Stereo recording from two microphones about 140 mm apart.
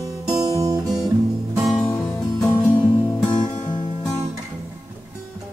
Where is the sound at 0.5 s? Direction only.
25° right (ahead or behind).